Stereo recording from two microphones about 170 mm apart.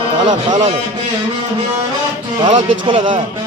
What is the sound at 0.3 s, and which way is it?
Speech, 45° right (ahead or behind).